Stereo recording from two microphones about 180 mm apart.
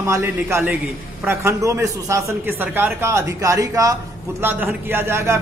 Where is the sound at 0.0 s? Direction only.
15° right (ahead or behind).